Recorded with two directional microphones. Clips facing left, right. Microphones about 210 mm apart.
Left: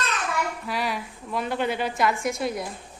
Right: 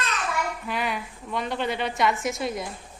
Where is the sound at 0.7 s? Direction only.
Centre (ahead or behind).